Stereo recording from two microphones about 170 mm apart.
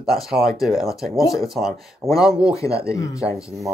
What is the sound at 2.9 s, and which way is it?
Speech, 20° left (ahead or behind).